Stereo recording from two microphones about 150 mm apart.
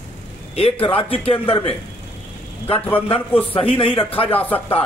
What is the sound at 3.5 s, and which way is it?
Speech, 40° left (ahead or behind).